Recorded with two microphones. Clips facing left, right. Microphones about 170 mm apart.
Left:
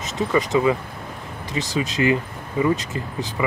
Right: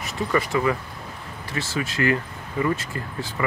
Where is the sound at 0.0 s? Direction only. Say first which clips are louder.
Left 3 dB; 20° left (ahead or behind).